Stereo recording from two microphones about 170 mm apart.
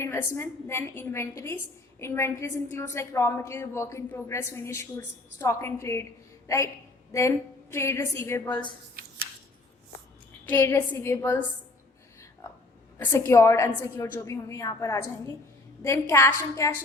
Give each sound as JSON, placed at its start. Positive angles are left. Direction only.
{"t": 0.0, "sound": "a woman's voice", "side_deg": 15}
{"t": 7.1, "sound": "a woman's voice", "side_deg": 15}
{"t": 10.4, "sound": "a woman's voice", "side_deg": 10}
{"t": 13.0, "sound": "a woman's voice", "side_deg": 15}